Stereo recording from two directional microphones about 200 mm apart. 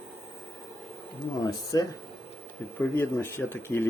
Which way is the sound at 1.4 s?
20° left (ahead or behind).